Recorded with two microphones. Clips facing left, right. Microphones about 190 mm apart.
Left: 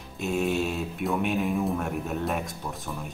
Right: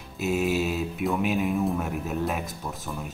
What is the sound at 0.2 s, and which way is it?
Speech, 5° right (ahead or behind).